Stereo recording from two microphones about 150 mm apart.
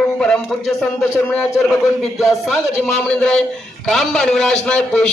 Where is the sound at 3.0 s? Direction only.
5° left (ahead or behind).